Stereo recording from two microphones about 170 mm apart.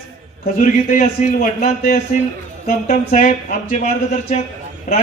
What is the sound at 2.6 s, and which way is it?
Speech, 45° left (ahead or behind).